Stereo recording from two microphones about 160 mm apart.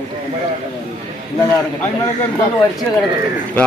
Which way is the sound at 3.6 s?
5° left (ahead or behind).